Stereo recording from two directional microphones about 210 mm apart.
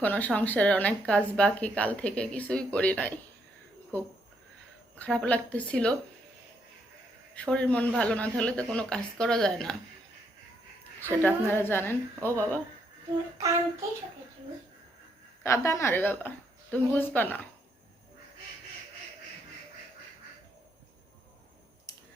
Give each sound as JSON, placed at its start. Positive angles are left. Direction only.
{"t": 0.0, "sound": "a woman's voice", "side_deg": 10}
{"t": 7.3, "sound": "a woman's voice", "side_deg": 5}
{"t": 11.0, "sound": "a woman's voice", "side_deg": 10}
{"t": 15.4, "sound": "a woman's voice", "side_deg": 15}
{"t": 21.9, "sound": "a sound", "side_deg": 15}